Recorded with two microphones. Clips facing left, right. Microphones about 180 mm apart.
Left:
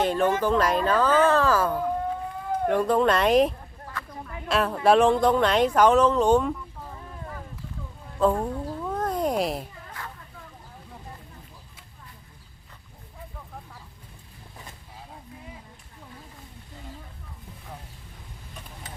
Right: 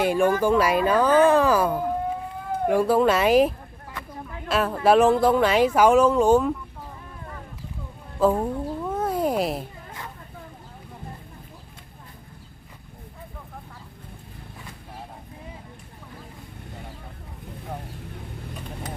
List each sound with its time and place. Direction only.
0.0 s speech: 10° right (ahead or behind)
3.9 s a sound: 15° right (ahead or behind)
4.3 s speech: centre (ahead or behind)
8.4 s cat: 5° right (ahead or behind)